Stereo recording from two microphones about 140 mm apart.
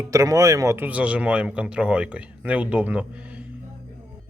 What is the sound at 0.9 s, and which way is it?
Speech, 10° right (ahead or behind).